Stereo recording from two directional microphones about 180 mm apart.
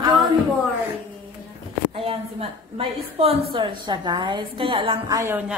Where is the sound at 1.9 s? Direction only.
30° right (ahead or behind).